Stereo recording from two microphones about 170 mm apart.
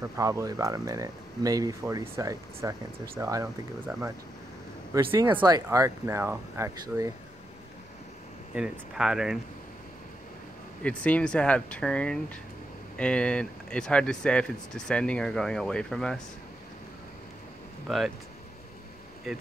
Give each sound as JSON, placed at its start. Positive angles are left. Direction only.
{"t": 0.0, "sound": "speech", "side_deg": -15}
{"t": 5.2, "sound": "speech", "side_deg": -25}
{"t": 8.5, "sound": "speech", "side_deg": -5}
{"t": 10.8, "sound": "speech", "side_deg": 5}
{"t": 17.8, "sound": "speech", "side_deg": 0}